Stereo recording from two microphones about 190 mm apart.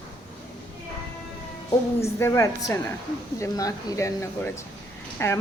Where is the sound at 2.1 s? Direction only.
15° left (ahead or behind).